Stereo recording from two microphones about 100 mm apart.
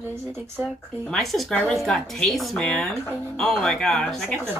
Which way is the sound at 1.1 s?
Centre (ahead or behind).